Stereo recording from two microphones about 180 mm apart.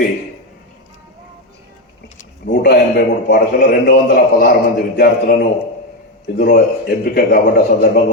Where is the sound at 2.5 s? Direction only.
65° left (ahead or behind).